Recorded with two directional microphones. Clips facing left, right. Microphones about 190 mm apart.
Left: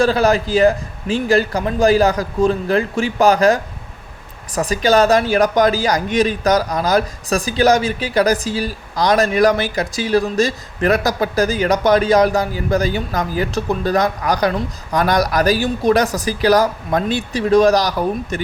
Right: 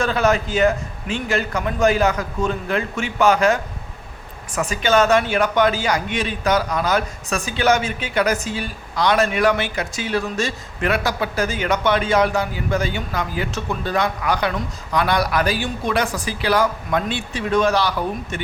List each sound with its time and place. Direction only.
0.0 s a man's voice: 35° left (ahead or behind)